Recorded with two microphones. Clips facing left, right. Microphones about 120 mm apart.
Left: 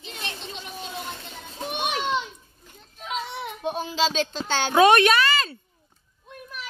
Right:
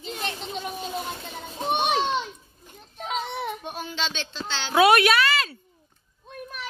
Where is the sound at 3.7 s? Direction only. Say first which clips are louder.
Left 6 dB; 25° left (ahead or behind); by 4.7 s 45° left (ahead or behind).